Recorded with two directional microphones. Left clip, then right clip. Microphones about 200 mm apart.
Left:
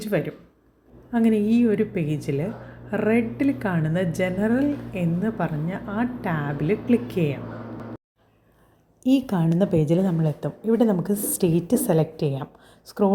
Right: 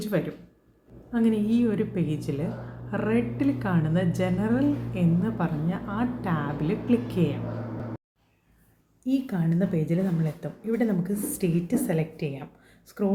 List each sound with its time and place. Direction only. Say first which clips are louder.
0.1 s a woman's voice: left 4 dB; 15° left (ahead or behind)
9.0 s a woman's voice: left 6 dB; 35° left (ahead or behind)
12.6 s a sound: left 8 dB; 25° left (ahead or behind)